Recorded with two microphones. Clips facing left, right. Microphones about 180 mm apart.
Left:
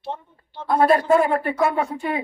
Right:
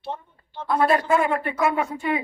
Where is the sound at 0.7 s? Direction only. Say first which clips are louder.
Left 3 dB; 35° left (ahead or behind).